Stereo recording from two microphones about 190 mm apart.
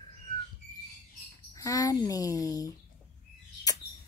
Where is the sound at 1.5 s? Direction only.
20° left (ahead or behind).